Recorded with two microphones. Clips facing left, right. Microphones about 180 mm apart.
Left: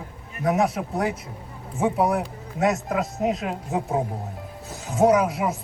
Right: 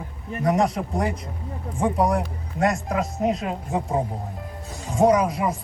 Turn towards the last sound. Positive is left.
turn(degrees=5)  # may be behind; listen again after turning